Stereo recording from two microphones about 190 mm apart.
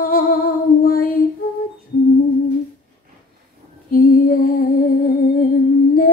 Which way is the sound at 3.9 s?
50° left (ahead or behind).